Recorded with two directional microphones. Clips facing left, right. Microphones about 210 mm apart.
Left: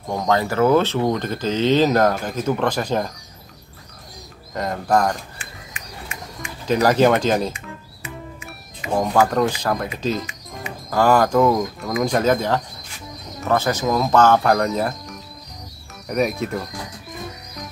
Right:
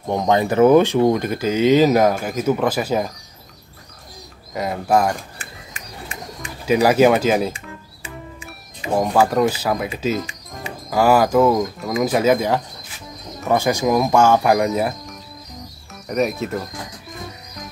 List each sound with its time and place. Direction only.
0.1 s speech: 20° right (ahead or behind)
4.6 s speech: 5° right (ahead or behind)
5.4 s bird: 35° right (ahead or behind)
6.6 s speech: 10° right (ahead or behind)
8.9 s speech: 10° right (ahead or behind)
16.1 s speech: centre (ahead or behind)